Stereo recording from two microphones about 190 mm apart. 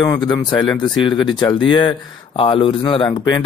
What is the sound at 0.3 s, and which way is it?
Speech, 20° left (ahead or behind).